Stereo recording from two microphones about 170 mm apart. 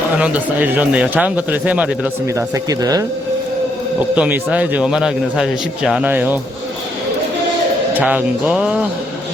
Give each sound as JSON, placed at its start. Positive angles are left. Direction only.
{"t": 0.2, "sound": "a man's voice", "side_deg": -10}
{"t": 2.3, "sound": "speech", "side_deg": -20}
{"t": 4.1, "sound": "a man's voice", "side_deg": -10}
{"t": 7.9, "sound": "a man's voice", "side_deg": -10}